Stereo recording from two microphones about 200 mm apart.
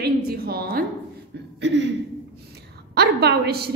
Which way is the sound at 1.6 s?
60° right (ahead or behind).